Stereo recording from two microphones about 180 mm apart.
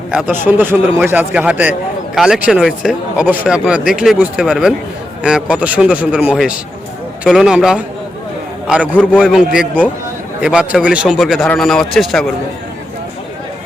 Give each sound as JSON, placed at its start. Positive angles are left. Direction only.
{"t": 0.1, "sound": "a man's voice", "side_deg": -10}